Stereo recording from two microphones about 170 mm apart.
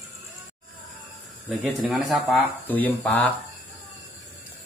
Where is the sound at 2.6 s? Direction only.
10° left (ahead or behind).